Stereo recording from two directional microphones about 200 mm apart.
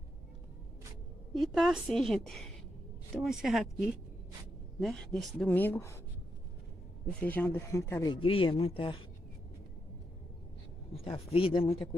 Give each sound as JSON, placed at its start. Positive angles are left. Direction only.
{"t": 1.3, "sound": "a woman's voice", "side_deg": 0}
{"t": 4.7, "sound": "a woman's voice", "side_deg": 0}
{"t": 7.1, "sound": "speech", "side_deg": 5}
{"t": 11.1, "sound": "speech", "side_deg": 25}